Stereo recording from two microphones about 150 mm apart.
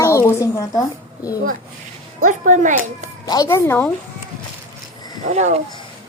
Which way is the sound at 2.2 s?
55° right (ahead or behind).